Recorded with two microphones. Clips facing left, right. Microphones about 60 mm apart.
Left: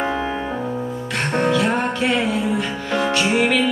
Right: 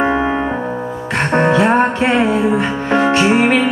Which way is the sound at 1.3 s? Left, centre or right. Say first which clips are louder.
Right 6 dB; right.